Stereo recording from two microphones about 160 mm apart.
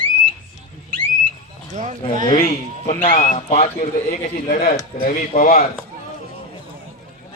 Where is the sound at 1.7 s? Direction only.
45° right (ahead or behind).